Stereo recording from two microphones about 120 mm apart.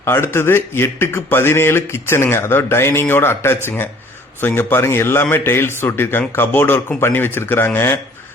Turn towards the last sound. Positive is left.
turn(degrees=20)  # may be behind; listen again after turning